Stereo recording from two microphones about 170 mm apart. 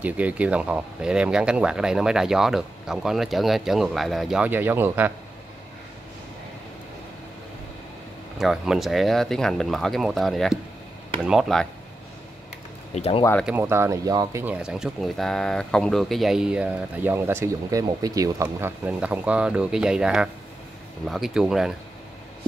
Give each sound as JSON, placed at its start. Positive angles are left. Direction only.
{"t": 0.0, "sound": "speech", "side_deg": -10}
{"t": 8.4, "sound": "speech", "side_deg": 0}
{"t": 12.9, "sound": "speech", "side_deg": 35}
{"t": 13.5, "sound": "speech", "side_deg": -15}
{"t": 14.4, "sound": "speech", "side_deg": -5}